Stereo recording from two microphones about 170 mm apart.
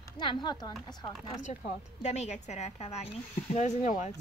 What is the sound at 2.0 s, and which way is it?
A woman's voice, 40° left (ahead or behind).